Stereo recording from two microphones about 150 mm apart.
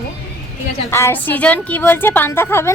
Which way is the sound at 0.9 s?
15° left (ahead or behind).